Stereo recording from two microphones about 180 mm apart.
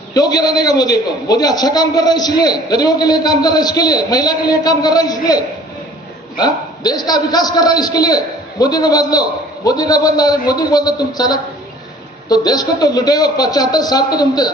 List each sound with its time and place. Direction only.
0.1 s a man's voice: 20° left (ahead or behind)